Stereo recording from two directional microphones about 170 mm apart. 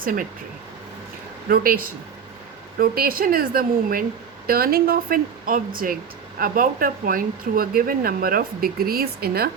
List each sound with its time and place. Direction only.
0.0 s speech: 55° right (ahead or behind)
1.5 s speech: 60° right (ahead or behind)